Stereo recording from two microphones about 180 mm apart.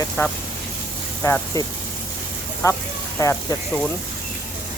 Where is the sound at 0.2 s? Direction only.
15° left (ahead or behind).